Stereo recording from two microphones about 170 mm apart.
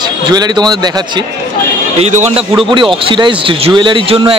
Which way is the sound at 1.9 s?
40° right (ahead or behind).